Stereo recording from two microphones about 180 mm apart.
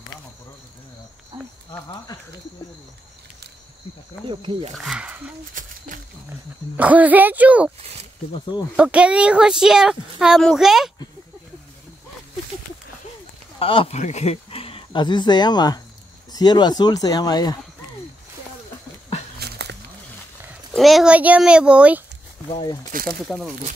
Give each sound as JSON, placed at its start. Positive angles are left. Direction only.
{"t": 1.7, "sound": "speech", "side_deg": 25}
{"t": 4.3, "sound": "speech", "side_deg": -25}
{"t": 4.7, "sound": "speech", "side_deg": -5}
{"t": 5.5, "sound": "a sound", "side_deg": -45}
{"t": 6.8, "sound": "speech", "side_deg": -10}
{"t": 7.8, "sound": "speech", "side_deg": -35}
{"t": 8.3, "sound": "speech", "side_deg": 25}
{"t": 8.7, "sound": "speech", "side_deg": -5}
{"t": 13.6, "sound": "speech", "side_deg": 30}
{"t": 19.4, "sound": "a sound", "side_deg": -65}
{"t": 20.7, "sound": "speech", "side_deg": 0}
{"t": 22.5, "sound": "speech", "side_deg": 25}
{"t": 23.2, "sound": "speech", "side_deg": 0}